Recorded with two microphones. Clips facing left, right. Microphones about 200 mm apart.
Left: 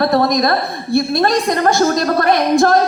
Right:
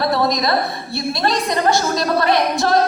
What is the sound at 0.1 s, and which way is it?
A woman's voice, 50° left (ahead or behind).